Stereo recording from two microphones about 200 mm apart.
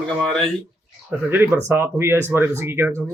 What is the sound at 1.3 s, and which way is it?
Speech, 10° right (ahead or behind).